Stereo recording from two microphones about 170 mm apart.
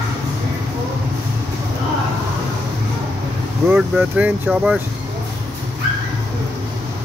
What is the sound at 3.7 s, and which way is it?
Speech, 10° right (ahead or behind).